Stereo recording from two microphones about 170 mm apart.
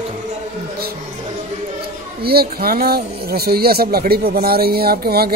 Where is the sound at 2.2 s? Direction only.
65° right (ahead or behind).